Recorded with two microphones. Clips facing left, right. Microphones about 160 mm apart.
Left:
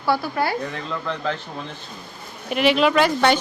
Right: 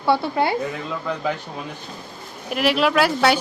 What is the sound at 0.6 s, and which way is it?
Speech, 5° right (ahead or behind).